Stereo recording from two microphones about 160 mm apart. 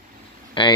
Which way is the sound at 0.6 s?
30° left (ahead or behind).